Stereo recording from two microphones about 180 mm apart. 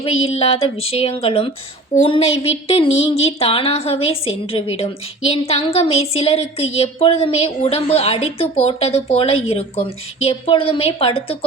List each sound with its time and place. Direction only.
0.0 s a woman's voice: 35° left (ahead or behind)